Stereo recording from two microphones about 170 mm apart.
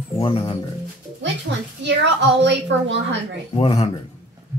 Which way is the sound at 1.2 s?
90° right.